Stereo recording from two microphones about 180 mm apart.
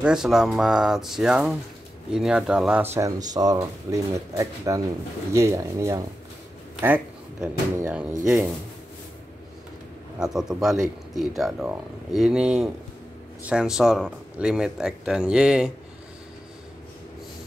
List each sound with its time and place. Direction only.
0.0 s speech: 5° right (ahead or behind)
10.1 s speech: 5° right (ahead or behind)